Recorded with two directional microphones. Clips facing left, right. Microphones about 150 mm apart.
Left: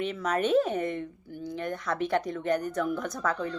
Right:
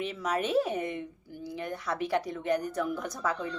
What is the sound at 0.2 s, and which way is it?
Speech, 10° right (ahead or behind).